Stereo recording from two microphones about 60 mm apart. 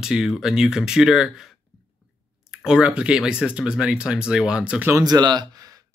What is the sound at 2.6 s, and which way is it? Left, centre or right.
Speech, centre.